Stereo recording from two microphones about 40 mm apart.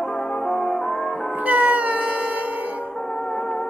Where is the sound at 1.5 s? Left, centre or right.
Right.